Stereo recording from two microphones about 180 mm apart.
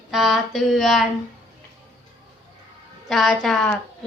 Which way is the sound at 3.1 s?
Centre (ahead or behind).